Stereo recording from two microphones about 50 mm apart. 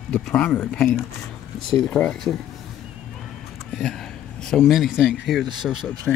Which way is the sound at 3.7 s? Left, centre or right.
Centre.